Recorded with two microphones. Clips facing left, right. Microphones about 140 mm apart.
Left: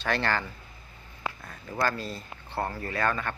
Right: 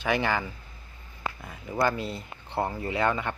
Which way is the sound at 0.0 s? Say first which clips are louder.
Right 2 dB; 10° right (ahead or behind).